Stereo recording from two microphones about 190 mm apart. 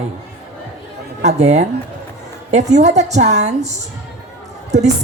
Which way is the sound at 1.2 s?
35° right (ahead or behind).